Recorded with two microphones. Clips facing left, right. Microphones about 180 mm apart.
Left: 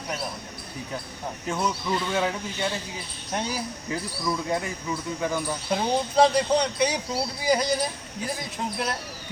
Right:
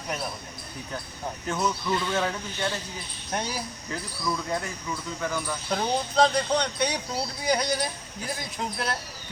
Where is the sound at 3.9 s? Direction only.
15° left (ahead or behind).